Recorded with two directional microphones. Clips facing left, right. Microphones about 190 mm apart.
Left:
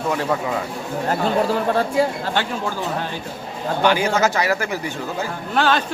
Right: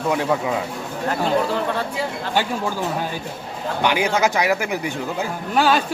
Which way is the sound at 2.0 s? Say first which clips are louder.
Left 7 dB; 45° left (ahead or behind).